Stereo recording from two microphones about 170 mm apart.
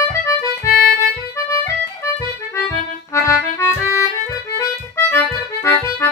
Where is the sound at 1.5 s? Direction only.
15° left (ahead or behind).